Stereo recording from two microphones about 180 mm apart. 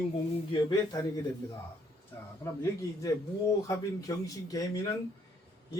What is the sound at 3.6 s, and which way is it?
Speech, 20° left (ahead or behind).